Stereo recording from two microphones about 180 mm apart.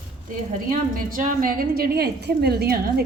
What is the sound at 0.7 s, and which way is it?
A woman's voice, 50° right (ahead or behind).